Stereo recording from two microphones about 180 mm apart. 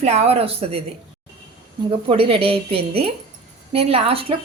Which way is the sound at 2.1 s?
30° right (ahead or behind).